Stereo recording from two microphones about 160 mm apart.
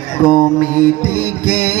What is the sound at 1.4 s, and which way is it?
Music, 45° left (ahead or behind).